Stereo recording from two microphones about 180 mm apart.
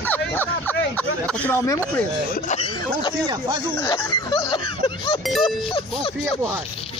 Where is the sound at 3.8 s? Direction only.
25° left (ahead or behind).